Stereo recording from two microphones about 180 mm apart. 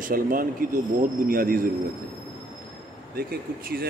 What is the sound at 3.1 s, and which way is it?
Speech, 60° right (ahead or behind).